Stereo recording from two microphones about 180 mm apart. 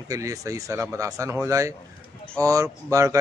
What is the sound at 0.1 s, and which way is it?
Speech, 20° right (ahead or behind).